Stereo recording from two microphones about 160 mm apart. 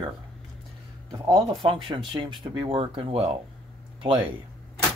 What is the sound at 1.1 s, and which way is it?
Speech, 25° right (ahead or behind).